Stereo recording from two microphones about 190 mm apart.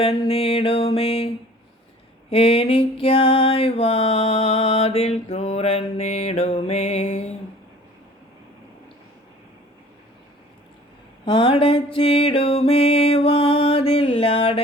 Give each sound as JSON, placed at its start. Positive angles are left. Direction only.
{"t": 0.0, "sound": "music", "side_deg": 30}
{"t": 2.3, "sound": "music", "side_deg": 30}
{"t": 11.3, "sound": "speech", "side_deg": 25}
{"t": 11.9, "sound": "music", "side_deg": 30}